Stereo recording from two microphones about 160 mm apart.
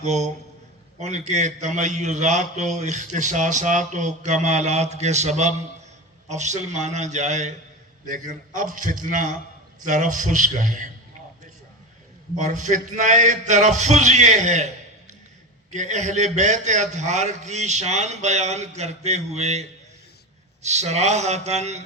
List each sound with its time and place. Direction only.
0.0 s a man's voice: 45° right (ahead or behind)
12.4 s a man's voice: 50° right (ahead or behind)
15.7 s a man's voice: 45° right (ahead or behind)